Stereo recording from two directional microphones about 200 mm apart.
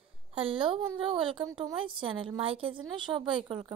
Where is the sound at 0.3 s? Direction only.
25° right (ahead or behind).